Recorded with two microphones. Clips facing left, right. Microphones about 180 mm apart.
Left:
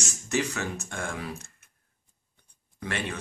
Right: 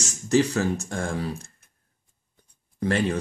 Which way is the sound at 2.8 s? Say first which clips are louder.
Right 9 dB; 35° right (ahead or behind).